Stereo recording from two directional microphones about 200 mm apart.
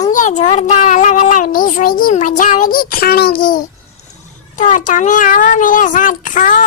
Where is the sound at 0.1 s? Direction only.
40° left (ahead or behind).